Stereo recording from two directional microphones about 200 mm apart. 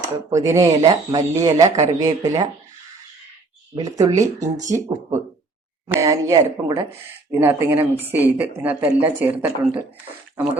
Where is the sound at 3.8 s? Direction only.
15° right (ahead or behind).